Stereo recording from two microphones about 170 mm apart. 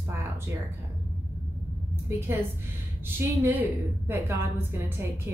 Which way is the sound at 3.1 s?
15° right (ahead or behind).